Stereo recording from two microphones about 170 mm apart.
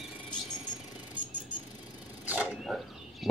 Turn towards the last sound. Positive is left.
turn(degrees=0)  # may be behind; listen again after turning